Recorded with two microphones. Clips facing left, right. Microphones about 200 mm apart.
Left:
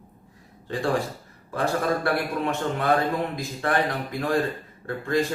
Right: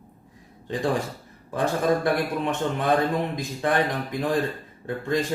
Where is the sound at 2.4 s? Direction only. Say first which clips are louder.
Even; 20° right (ahead or behind).